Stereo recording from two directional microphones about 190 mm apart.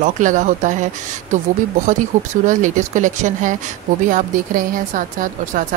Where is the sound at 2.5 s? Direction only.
40° right (ahead or behind).